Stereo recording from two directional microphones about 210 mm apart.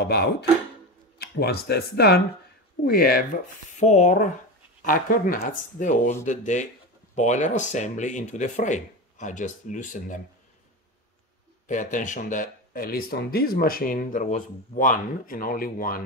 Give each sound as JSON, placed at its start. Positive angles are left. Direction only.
{"t": 0.0, "sound": "speech", "side_deg": 50}
{"t": 3.7, "sound": "speech", "side_deg": 35}
{"t": 11.6, "sound": "speech", "side_deg": 35}